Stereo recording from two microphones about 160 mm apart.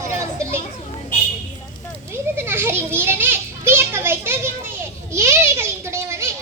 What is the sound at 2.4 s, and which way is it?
Children playing, 15° right (ahead or behind).